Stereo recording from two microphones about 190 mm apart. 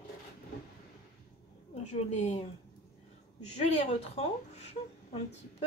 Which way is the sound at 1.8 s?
35° left (ahead or behind).